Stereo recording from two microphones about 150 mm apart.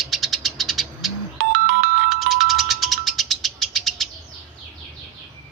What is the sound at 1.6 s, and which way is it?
Music, 90° right.